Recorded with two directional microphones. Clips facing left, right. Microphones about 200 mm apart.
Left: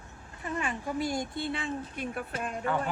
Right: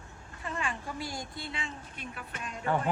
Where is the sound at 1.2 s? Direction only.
55° left (ahead or behind).